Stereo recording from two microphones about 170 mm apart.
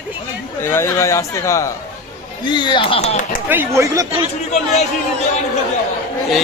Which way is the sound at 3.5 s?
15° right (ahead or behind).